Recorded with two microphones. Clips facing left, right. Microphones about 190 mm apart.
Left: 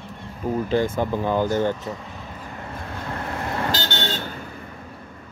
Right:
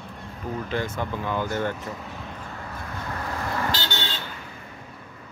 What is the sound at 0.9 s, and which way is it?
Speech, 35° left (ahead or behind).